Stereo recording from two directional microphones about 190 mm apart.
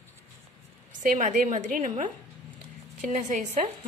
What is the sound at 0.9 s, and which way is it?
A woman's voice, 40° right (ahead or behind).